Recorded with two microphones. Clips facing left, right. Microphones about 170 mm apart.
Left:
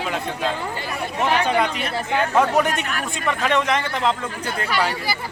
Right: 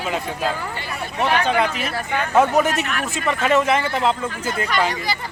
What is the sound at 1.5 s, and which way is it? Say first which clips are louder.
Speech: even; 5° right (ahead or behind).